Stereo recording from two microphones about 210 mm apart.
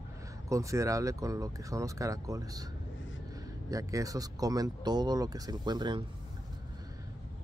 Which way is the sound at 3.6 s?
15° right (ahead or behind).